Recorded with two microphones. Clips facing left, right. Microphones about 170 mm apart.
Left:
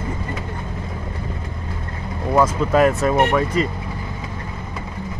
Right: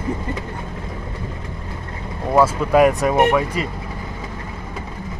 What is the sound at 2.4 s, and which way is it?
Speech, 10° right (ahead or behind).